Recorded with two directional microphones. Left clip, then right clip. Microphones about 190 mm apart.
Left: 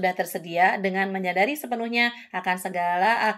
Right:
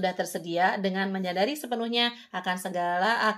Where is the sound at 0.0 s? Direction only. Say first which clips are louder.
Left 4 dB; 30° left (ahead or behind).